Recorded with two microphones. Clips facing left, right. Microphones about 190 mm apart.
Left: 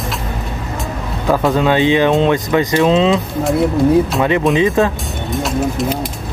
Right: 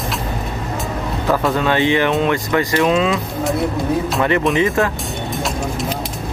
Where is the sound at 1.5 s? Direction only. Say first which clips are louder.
Left 5 dB; 15° left (ahead or behind).